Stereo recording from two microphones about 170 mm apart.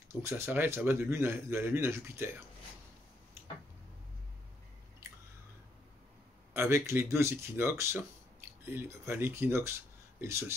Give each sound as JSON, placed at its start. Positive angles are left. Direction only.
{"t": 0.2, "sound": "speech", "side_deg": -15}
{"t": 6.5, "sound": "speech", "side_deg": -15}